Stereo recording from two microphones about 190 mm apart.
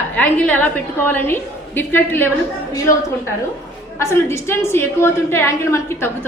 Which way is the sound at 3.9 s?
15° left (ahead or behind).